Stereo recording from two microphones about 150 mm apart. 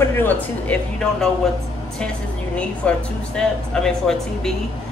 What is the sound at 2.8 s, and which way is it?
A woman's voice, 5° left (ahead or behind).